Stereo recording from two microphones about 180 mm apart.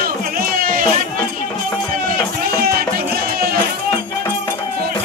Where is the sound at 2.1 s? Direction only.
55° right (ahead or behind).